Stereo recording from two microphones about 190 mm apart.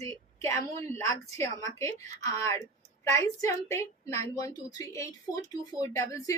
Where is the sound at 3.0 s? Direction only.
15° left (ahead or behind).